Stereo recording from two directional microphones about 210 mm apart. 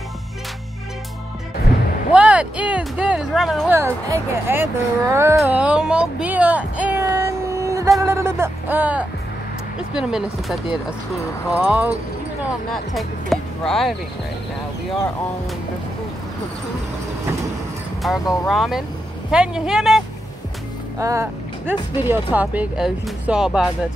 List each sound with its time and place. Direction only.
2.1 s speech: 5° right (ahead or behind)
3.7 s speech: 10° right (ahead or behind)
18.2 s speech: 15° left (ahead or behind)
18.5 s speech: centre (ahead or behind)
21.0 s speech: 15° right (ahead or behind)